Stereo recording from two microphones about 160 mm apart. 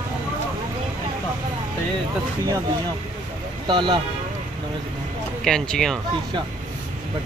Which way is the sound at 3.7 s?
30° right (ahead or behind).